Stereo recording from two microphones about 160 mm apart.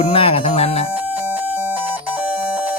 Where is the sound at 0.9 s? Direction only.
10° right (ahead or behind).